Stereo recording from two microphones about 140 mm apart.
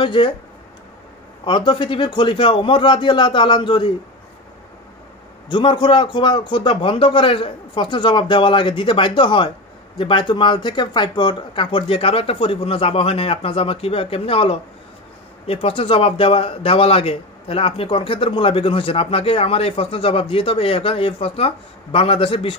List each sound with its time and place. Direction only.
0.0 s speech: 35° left (ahead or behind)
1.4 s speech: 35° left (ahead or behind)
5.5 s speech: 35° left (ahead or behind)